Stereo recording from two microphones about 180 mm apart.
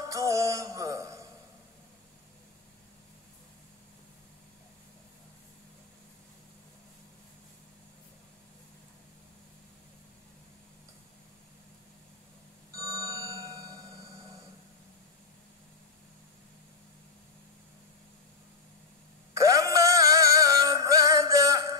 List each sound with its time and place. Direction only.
0.0 s music: 15° right (ahead or behind)
12.7 s clock: 20° right (ahead or behind)
19.3 s music: 20° right (ahead or behind)